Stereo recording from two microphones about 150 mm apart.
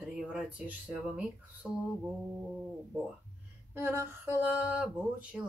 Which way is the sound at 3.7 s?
15° right (ahead or behind).